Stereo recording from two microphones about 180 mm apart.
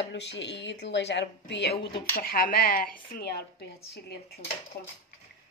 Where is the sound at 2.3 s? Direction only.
55° left (ahead or behind).